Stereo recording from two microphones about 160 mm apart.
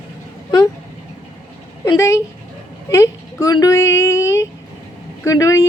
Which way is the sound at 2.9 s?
20° left (ahead or behind).